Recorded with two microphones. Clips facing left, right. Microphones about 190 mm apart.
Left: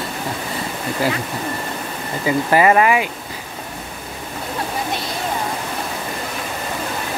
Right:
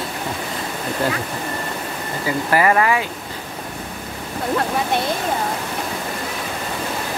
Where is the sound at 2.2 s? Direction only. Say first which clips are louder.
Left 3 dB; 20° left (ahead or behind).